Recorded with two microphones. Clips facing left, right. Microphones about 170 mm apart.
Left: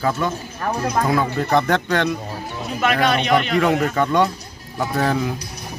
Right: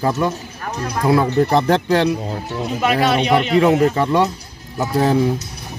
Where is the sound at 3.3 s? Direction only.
25° right (ahead or behind).